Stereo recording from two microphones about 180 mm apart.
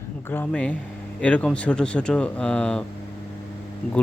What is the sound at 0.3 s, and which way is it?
Speech, 10° left (ahead or behind).